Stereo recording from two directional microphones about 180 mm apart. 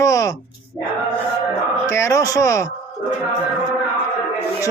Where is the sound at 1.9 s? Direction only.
15° left (ahead or behind).